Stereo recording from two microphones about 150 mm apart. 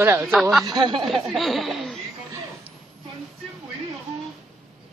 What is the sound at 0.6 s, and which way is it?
Speech, 30° right (ahead or behind).